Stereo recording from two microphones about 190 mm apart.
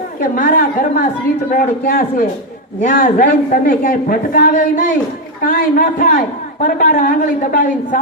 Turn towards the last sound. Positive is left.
turn(degrees=45)  # may be behind; listen again after turning